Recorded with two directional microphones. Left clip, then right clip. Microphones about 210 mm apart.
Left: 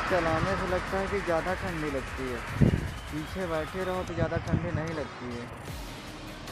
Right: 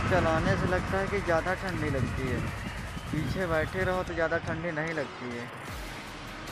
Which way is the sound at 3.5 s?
Centre (ahead or behind).